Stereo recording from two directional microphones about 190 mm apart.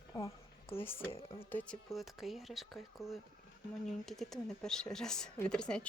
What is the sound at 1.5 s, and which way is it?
Speech, 5° left (ahead or behind).